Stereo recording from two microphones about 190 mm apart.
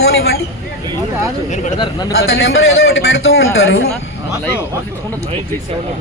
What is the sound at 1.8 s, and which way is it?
Speech, 20° left (ahead or behind).